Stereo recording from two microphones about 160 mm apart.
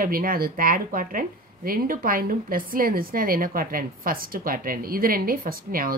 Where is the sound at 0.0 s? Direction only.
65° right (ahead or behind).